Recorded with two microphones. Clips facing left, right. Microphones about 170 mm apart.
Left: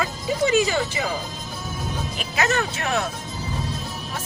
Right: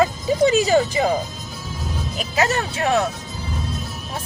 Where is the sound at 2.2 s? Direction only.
30° right (ahead or behind).